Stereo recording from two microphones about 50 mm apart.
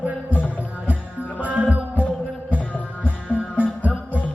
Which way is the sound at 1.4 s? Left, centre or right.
Right.